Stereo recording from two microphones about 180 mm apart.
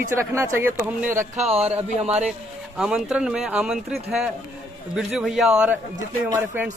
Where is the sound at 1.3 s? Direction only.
35° right (ahead or behind).